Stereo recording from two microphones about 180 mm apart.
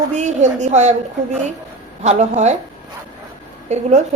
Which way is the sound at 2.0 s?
40° right (ahead or behind).